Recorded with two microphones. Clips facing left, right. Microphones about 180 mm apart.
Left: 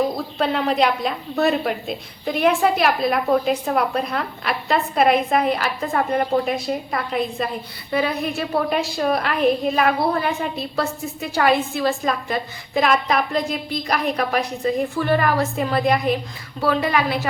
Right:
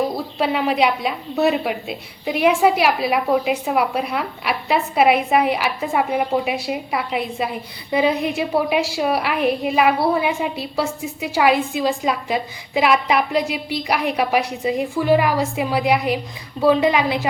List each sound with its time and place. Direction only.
0.3 s a woman's voice: 5° right (ahead or behind)